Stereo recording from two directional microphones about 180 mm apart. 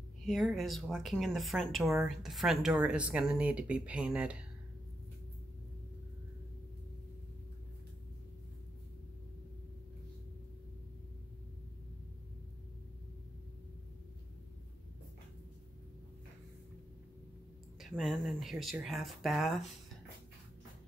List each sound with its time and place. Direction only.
0.3 s speech: centre (ahead or behind)
1.8 s speech: 15° right (ahead or behind)
2.0 s speech: centre (ahead or behind)
17.7 s speech: centre (ahead or behind)